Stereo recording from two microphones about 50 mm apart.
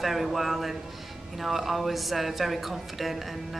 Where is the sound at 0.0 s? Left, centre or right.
Centre.